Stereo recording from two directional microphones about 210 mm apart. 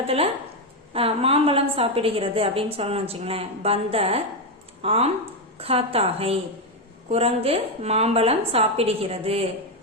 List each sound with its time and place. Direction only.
0.9 s a woman's voice: 25° right (ahead or behind)